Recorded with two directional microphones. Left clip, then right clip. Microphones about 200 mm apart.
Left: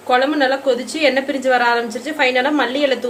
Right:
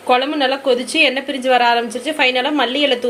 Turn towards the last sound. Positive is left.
turn(degrees=-20)  # may be behind; listen again after turning